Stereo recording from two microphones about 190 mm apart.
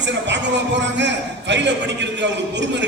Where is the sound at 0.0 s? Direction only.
70° right (ahead or behind).